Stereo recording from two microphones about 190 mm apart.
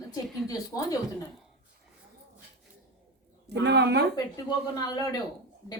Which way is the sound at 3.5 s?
65° right (ahead or behind).